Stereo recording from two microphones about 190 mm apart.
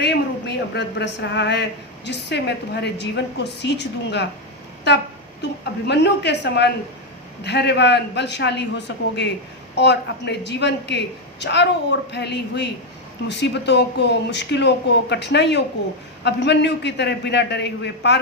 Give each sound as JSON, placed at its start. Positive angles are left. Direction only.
{"t": 0.0, "sound": "a woman's voice", "side_deg": 60}
{"t": 5.9, "sound": "a woman's voice", "side_deg": 65}